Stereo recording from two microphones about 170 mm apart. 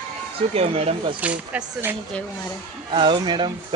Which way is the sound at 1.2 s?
10° right (ahead or behind).